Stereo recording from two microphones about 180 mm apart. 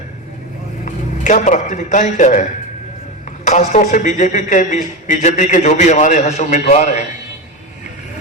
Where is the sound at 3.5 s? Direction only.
40° left (ahead or behind).